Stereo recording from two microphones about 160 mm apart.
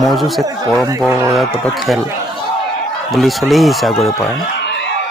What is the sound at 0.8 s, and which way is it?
Speech, 15° right (ahead or behind).